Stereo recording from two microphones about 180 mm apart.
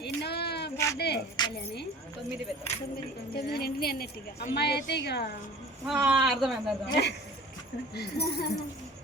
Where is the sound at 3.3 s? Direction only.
60° left (ahead or behind).